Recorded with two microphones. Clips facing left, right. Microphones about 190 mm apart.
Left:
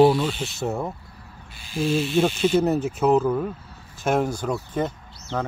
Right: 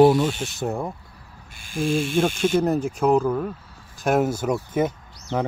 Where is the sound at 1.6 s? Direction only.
50° right (ahead or behind).